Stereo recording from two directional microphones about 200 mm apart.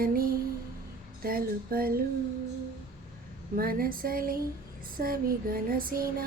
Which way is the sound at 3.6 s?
45° right (ahead or behind).